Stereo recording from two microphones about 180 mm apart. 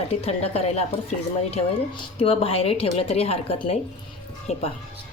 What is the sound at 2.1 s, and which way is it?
A woman's voice, 30° left (ahead or behind).